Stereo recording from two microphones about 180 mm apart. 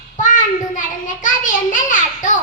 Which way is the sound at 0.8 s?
45° left (ahead or behind).